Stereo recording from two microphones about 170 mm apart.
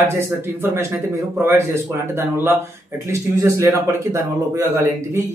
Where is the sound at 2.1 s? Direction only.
15° right (ahead or behind).